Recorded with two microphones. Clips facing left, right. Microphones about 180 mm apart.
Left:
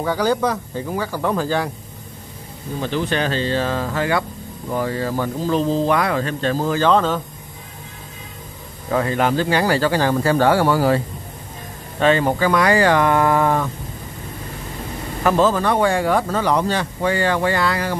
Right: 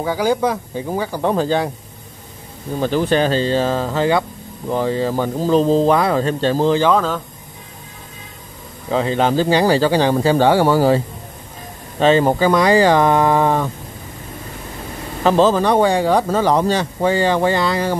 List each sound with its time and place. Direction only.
0.0 s speech: 10° right (ahead or behind)
2.8 s speech: 40° right (ahead or behind); by 6.9 s 20° right (ahead or behind)
6.9 s speech: centre (ahead or behind)
8.9 s speech: 25° right (ahead or behind)
12.0 s speech: 30° right (ahead or behind)
15.2 s speech: 30° right (ahead or behind)